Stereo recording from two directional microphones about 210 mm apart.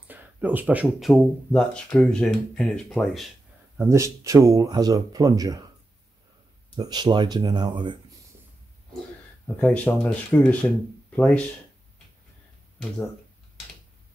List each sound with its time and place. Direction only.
0.1 s speech: 10° right (ahead or behind)
3.7 s speech: 15° right (ahead or behind)
6.8 s speech: 20° right (ahead or behind)
9.6 s speech: 10° left (ahead or behind)